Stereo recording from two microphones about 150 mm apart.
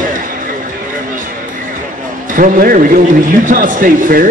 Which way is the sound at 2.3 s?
65° right (ahead or behind).